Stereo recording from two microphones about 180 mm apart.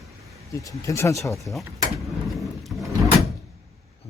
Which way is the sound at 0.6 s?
15° left (ahead or behind).